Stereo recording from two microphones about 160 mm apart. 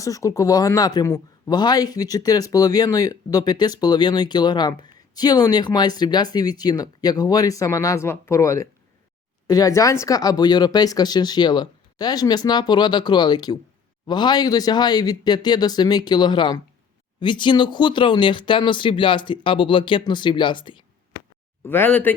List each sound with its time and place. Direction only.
0.0 s speech: 20° left (ahead or behind)
21.6 s speech: 15° left (ahead or behind)